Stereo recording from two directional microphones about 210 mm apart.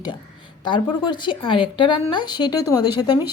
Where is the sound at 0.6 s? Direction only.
20° left (ahead or behind).